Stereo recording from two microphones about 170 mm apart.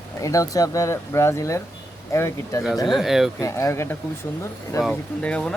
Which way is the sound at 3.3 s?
20° left (ahead or behind).